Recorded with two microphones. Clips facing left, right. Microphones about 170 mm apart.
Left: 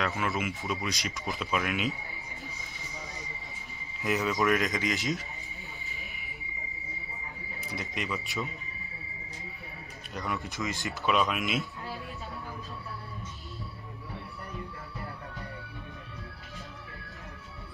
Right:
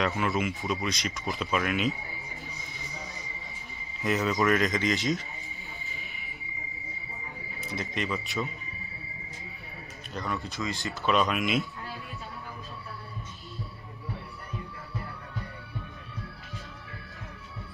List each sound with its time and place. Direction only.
0.0 s speech: centre (ahead or behind)
4.0 s speech: 5° left (ahead or behind)
5.9 s a sound: centre (ahead or behind)
7.7 s speech: 10° left (ahead or behind)
10.1 s speech: 15° left (ahead or behind)
11.1 s speech: 5° left (ahead or behind)